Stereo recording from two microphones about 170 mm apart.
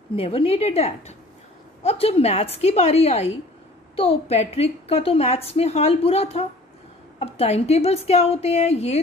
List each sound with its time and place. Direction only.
0.1 s a woman's voice: 35° left (ahead or behind)